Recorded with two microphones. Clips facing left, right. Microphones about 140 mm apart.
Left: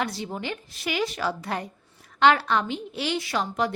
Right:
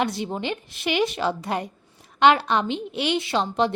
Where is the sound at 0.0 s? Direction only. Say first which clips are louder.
Right 4 dB; 20° right (ahead or behind).